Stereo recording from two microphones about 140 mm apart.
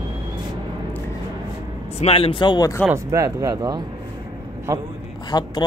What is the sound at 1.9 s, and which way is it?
Speech, 45° left (ahead or behind).